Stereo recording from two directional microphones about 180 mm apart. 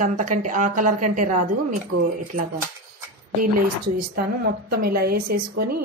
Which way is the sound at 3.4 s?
60° right (ahead or behind).